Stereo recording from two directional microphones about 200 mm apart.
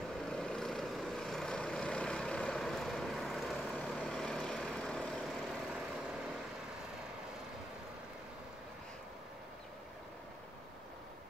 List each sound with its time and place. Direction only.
0.3 s vehicle: 5° left (ahead or behind)